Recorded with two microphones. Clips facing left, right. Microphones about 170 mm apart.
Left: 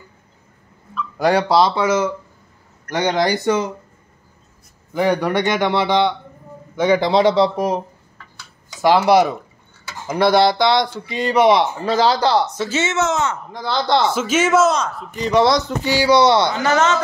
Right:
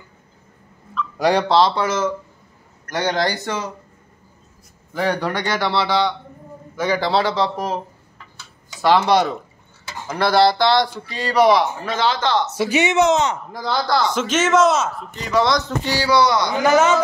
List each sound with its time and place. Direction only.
0.9 s a man's voice: centre (ahead or behind)
4.9 s a man's voice: 15° left (ahead or behind)
8.8 s a man's voice: 10° left (ahead or behind)
10.0 s speech: 20° left (ahead or behind)
12.5 s speech: 15° right (ahead or behind)
13.7 s speech: 25° left (ahead or behind)
14.1 s a man's voice: 10° left (ahead or behind)
15.2 s speech: 30° left (ahead or behind)
15.8 s speech: 15° left (ahead or behind)
16.6 s speech: 10° right (ahead or behind)